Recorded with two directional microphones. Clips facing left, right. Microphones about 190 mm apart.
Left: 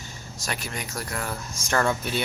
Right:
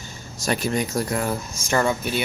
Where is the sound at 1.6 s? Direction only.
5° right (ahead or behind).